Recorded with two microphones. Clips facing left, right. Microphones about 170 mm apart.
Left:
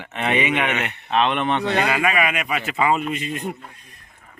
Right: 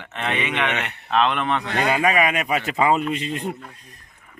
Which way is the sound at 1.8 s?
35° right (ahead or behind).